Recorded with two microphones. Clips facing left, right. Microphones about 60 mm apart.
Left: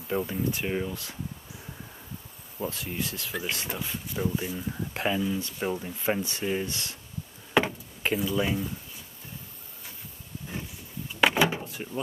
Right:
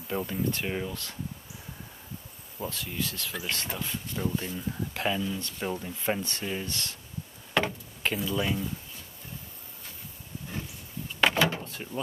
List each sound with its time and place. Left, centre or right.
0.1 s speech: centre
2.6 s speech: centre
3.3 s speech: centre
7.5 s a sound: centre
11.1 s door: centre